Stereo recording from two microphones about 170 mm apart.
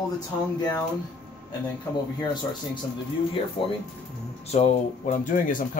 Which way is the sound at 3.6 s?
30° left (ahead or behind).